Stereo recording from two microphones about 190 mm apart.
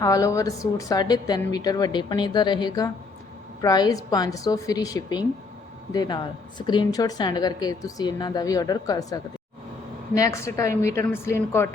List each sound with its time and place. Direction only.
0.0 s a woman's voice: 15° left (ahead or behind)